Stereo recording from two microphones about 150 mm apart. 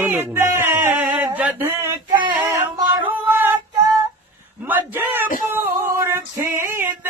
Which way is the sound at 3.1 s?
15° right (ahead or behind).